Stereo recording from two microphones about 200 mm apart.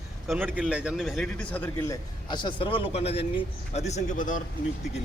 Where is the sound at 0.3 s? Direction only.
10° right (ahead or behind).